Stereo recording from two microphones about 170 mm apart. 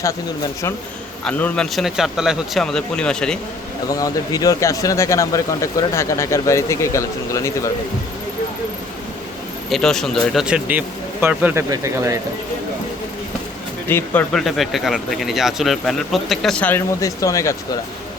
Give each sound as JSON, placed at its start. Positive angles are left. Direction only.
{"t": 1.2, "sound": "speech", "side_deg": 10}
{"t": 3.8, "sound": "speech", "side_deg": 20}
{"t": 9.6, "sound": "speech", "side_deg": 0}
{"t": 13.8, "sound": "speech", "side_deg": 10}
{"t": 14.4, "sound": "speech", "side_deg": 0}